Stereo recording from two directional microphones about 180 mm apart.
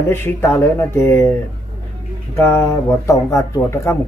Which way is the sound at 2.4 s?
15° left (ahead or behind).